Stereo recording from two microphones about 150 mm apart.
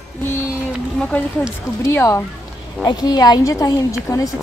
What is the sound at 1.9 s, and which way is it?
A woman's voice, 20° left (ahead or behind).